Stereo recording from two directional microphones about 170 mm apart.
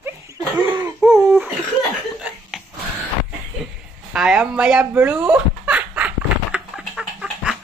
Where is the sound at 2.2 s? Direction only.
5° right (ahead or behind).